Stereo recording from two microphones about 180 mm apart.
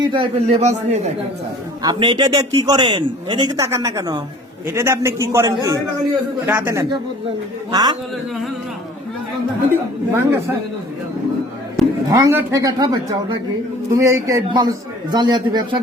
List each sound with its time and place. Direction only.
0.0 s a man's voice: 30° right (ahead or behind)
1.8 s a man's voice: 25° right (ahead or behind)
10.1 s a man's voice: 15° right (ahead or behind)
12.0 s a man's voice: 20° right (ahead or behind)